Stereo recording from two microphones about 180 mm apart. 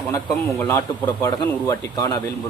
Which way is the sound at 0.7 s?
15° left (ahead or behind).